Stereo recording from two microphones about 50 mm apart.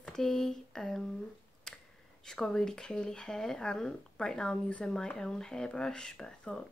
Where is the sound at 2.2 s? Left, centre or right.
Centre.